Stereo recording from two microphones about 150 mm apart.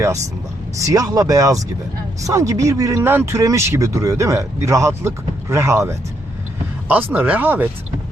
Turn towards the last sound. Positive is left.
turn(degrees=-10)  # may be behind; listen again after turning